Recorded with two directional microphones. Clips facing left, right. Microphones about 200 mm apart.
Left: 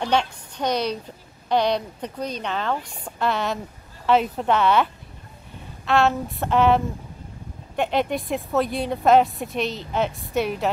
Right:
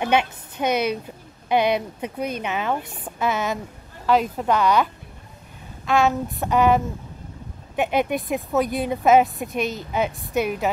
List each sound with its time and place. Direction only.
0.0 s a woman's voice: 10° right (ahead or behind)
5.9 s a woman's voice: centre (ahead or behind)
7.7 s a woman's voice: 5° right (ahead or behind)